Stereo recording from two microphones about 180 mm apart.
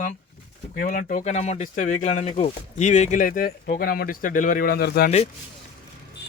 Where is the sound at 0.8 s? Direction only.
45° left (ahead or behind).